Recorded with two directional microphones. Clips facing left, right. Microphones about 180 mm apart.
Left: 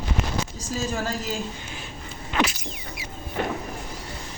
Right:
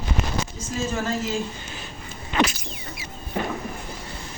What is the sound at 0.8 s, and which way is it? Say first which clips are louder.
Speech: right 3 dB; 35° left (ahead or behind).